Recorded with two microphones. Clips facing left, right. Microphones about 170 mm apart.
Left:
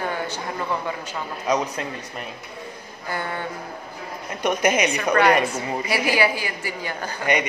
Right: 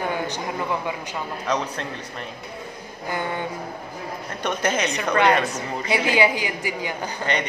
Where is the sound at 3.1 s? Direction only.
15° right (ahead or behind).